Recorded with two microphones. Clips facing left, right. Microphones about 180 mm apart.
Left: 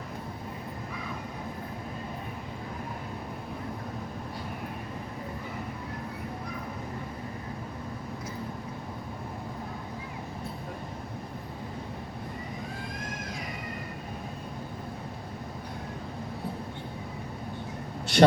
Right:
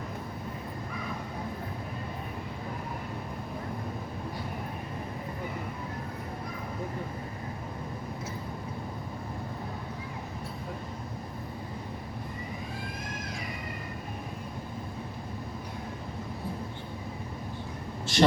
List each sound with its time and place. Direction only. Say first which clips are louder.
18.0 s vehicle: left 4 dB; 65° left (ahead or behind)